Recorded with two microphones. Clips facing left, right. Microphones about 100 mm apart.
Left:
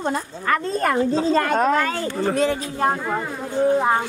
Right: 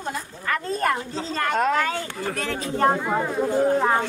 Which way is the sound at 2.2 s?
25° left (ahead or behind).